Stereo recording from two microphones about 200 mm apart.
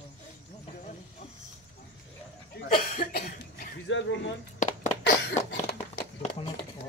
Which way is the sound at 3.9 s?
65° left (ahead or behind).